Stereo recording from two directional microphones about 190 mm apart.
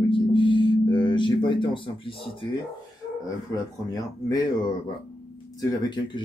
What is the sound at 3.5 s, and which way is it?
Speech, 20° left (ahead or behind).